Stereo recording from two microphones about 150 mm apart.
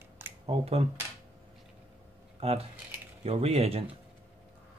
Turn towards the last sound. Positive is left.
turn(degrees=-40)  # may be behind; listen again after turning